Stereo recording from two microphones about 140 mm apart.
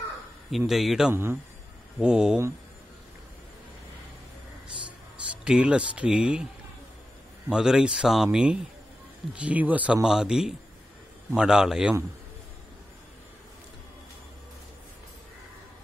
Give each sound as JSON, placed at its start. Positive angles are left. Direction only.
{"t": 0.5, "sound": "speech", "side_deg": 0}
{"t": 1.1, "sound": "speech", "side_deg": -15}
{"t": 2.0, "sound": "speech", "side_deg": -5}
{"t": 5.4, "sound": "speech", "side_deg": -5}
{"t": 7.4, "sound": "speech", "side_deg": -5}